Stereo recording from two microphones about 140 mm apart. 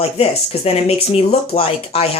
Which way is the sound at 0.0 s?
45° left (ahead or behind).